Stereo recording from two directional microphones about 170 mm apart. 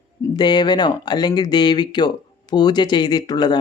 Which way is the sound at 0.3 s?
25° left (ahead or behind).